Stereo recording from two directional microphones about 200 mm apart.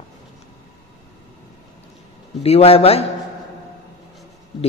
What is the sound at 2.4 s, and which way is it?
Speech, 30° left (ahead or behind).